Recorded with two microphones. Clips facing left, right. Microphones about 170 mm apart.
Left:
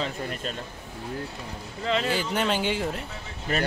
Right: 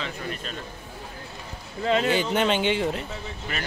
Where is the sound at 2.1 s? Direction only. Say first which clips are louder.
Right 3 dB; centre (ahead or behind).